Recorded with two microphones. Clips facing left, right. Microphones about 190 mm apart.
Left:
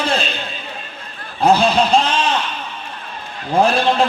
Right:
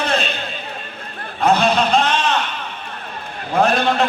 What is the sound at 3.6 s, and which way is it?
Speech, 30° left (ahead or behind).